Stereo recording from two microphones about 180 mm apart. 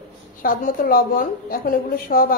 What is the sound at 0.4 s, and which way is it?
A woman's voice, 50° left (ahead or behind).